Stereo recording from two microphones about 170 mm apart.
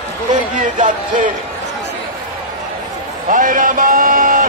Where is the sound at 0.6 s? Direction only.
50° right (ahead or behind).